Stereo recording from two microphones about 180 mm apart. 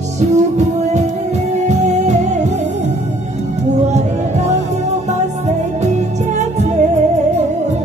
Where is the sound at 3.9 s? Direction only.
40° right (ahead or behind).